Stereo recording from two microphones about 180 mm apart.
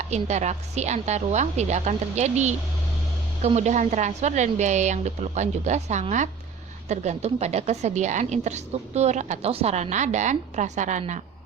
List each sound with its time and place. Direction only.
0.0 s a woman's voice: 40° right (ahead or behind)